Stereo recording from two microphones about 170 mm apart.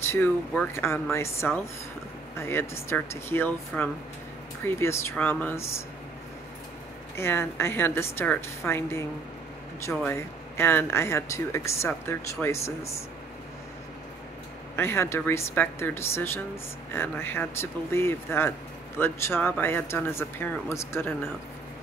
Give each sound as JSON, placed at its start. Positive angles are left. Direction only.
{"t": 0.0, "sound": "speech", "side_deg": 15}
{"t": 7.2, "sound": "speech", "side_deg": 15}
{"t": 14.8, "sound": "speech", "side_deg": 15}